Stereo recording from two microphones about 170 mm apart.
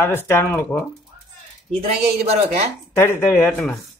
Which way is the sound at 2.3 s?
40° right (ahead or behind).